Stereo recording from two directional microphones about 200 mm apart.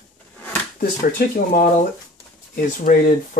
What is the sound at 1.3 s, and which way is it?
Speech, 45° left (ahead or behind).